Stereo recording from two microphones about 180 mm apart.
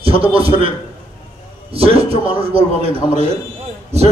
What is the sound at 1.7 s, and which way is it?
A man's voice, 30° right (ahead or behind).